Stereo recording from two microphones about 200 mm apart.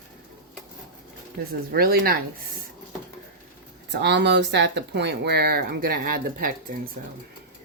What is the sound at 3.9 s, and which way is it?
Speech, 60° right (ahead or behind).